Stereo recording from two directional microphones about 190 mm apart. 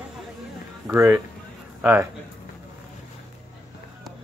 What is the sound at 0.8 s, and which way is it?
A man's voice, 10° right (ahead or behind).